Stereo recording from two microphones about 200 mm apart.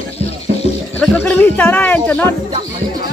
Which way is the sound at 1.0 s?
5° left (ahead or behind).